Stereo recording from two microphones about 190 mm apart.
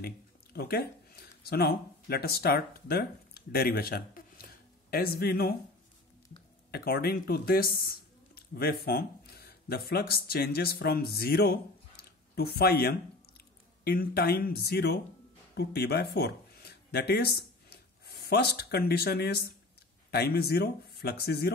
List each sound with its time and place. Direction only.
0.0 s speech: 55° left (ahead or behind)
6.7 s speech: 55° left (ahead or behind)
12.0 s a sound: 55° left (ahead or behind)
13.8 s speech: 55° left (ahead or behind)